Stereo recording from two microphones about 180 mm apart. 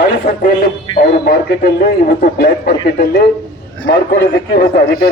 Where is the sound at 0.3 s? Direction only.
55° left (ahead or behind).